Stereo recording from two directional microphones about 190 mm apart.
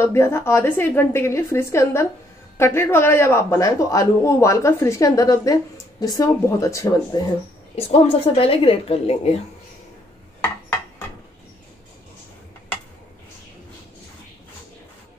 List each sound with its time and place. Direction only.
0.0 s speech: 15° left (ahead or behind)
7.7 s speech: 30° left (ahead or behind)